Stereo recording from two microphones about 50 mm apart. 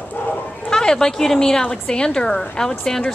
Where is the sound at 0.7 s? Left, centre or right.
Centre.